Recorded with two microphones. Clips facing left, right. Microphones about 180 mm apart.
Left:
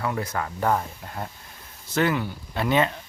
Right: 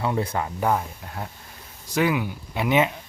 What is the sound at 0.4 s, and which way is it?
Speech, 5° right (ahead or behind).